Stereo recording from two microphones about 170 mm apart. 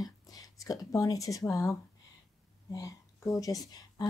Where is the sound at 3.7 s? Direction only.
25° left (ahead or behind).